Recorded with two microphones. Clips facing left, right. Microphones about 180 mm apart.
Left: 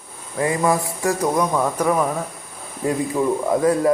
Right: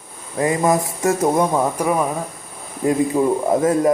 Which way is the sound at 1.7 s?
10° right (ahead or behind).